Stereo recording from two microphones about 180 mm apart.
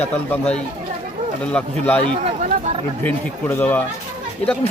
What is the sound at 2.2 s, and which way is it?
Speech, 35° right (ahead or behind).